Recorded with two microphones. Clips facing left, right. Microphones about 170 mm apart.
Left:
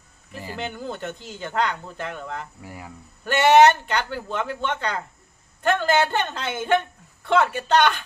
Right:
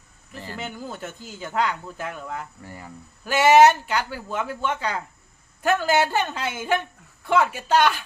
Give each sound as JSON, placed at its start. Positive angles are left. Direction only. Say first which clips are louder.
{"t": 0.3, "sound": "a sound", "louder": "left 2 dB", "side_deg": 10}
{"t": 0.6, "sound": "speech", "louder": "left 4 dB", "side_deg": -5}
{"t": 2.6, "sound": "speech", "louder": "left 1 dB", "side_deg": 10}
{"t": 3.2, "sound": "speech", "louder": "even", "side_deg": -5}